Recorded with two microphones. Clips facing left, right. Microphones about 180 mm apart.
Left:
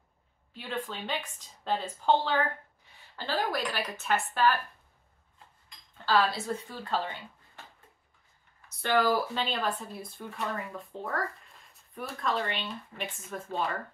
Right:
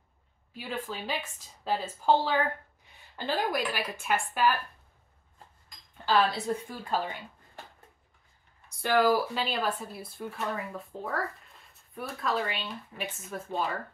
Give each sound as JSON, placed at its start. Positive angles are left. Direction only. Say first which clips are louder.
{"t": 0.5, "sound": "speech", "louder": "even", "side_deg": -10}
{"t": 6.4, "sound": "speech", "louder": "right 3 dB", "side_deg": -10}
{"t": 8.6, "sound": "speech", "louder": "right 2 dB", "side_deg": -10}